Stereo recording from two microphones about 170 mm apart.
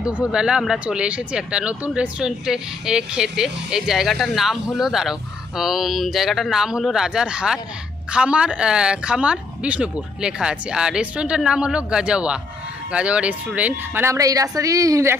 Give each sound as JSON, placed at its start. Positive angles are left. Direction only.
{"t": 0.0, "sound": "speech", "side_deg": -5}